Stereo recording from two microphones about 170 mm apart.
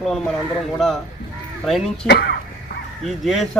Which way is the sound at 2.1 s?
75° left (ahead or behind).